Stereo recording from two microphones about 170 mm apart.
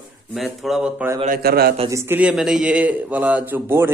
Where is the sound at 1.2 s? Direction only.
60° right (ahead or behind).